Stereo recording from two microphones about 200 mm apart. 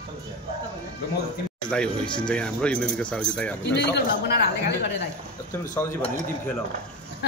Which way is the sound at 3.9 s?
55° left (ahead or behind).